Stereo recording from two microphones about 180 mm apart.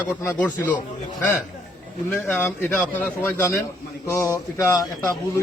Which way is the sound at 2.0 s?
10° left (ahead or behind).